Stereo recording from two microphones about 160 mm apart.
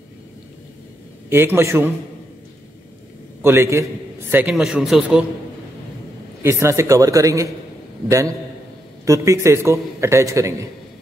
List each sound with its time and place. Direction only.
1.3 s a man's voice: 15° right (ahead or behind)
3.4 s a man's voice: 15° right (ahead or behind)
6.4 s a man's voice: 15° right (ahead or behind)